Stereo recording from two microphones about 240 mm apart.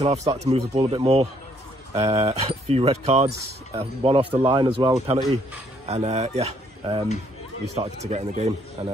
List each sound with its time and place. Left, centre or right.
0.3 s speech: right